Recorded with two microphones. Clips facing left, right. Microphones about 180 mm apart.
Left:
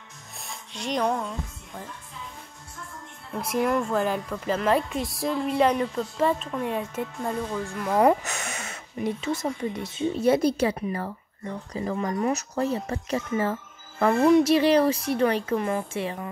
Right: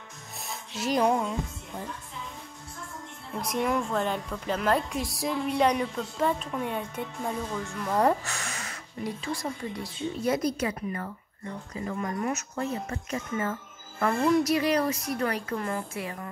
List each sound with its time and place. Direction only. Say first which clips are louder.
0.4 s music: right 3 dB; 5° right (ahead or behind)
3.3 s a woman's voice: left 3 dB; 5° left (ahead or behind); by 16.2 s 25° left (ahead or behind)